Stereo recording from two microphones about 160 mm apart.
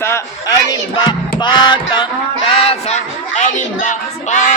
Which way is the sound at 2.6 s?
40° left (ahead or behind).